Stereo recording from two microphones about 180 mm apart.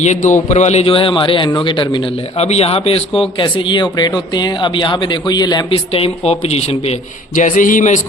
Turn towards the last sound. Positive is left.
turn(degrees=45)  # may be behind; listen again after turning